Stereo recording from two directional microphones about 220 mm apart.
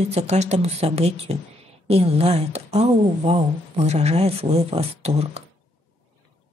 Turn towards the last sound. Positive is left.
turn(degrees=-30)  # may be behind; listen again after turning